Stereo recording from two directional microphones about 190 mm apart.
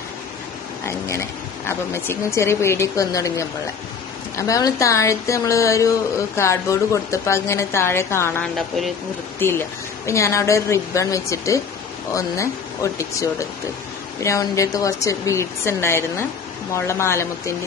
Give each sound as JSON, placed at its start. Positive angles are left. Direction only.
{"t": 0.8, "sound": "speech", "side_deg": 15}
{"t": 8.5, "sound": "a woman's voice", "side_deg": 0}
{"t": 9.4, "sound": "speech", "side_deg": 10}